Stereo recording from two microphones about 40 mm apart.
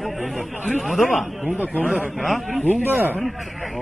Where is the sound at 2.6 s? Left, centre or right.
Right.